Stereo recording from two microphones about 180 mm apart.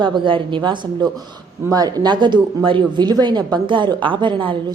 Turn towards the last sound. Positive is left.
turn(degrees=-25)  # may be behind; listen again after turning